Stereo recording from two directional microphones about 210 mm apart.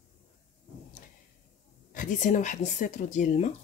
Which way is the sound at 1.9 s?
35° left (ahead or behind).